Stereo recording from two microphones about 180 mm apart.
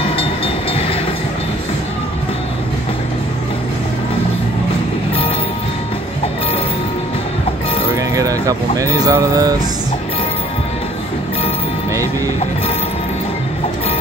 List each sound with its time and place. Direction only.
8.2 s speech: 20° right (ahead or behind)